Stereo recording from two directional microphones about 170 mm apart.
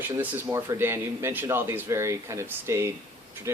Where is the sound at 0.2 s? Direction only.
15° right (ahead or behind).